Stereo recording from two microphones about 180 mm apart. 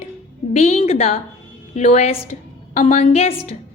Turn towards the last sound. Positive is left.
turn(degrees=35)  # may be behind; listen again after turning